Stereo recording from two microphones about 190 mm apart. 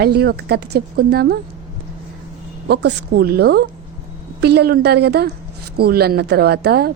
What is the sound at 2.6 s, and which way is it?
A woman's voice, 60° right (ahead or behind).